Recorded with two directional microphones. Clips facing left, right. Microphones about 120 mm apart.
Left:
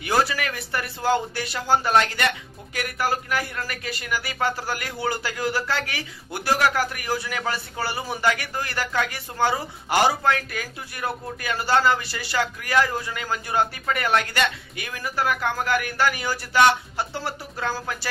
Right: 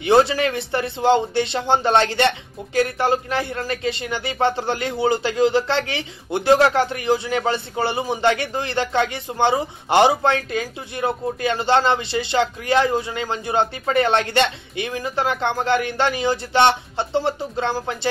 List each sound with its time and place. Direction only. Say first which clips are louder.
0.0 s speech: right 7 dB; 25° right (ahead or behind)